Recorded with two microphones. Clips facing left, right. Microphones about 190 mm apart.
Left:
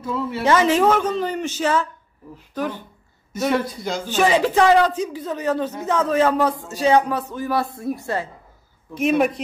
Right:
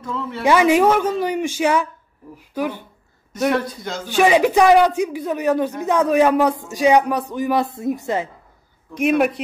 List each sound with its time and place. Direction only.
0.0 s speech: 10° left (ahead or behind)
0.4 s a man's voice: 15° right (ahead or behind)
3.3 s a man's voice: centre (ahead or behind)
4.1 s a man's voice: 15° right (ahead or behind)
8.9 s a man's voice: centre (ahead or behind)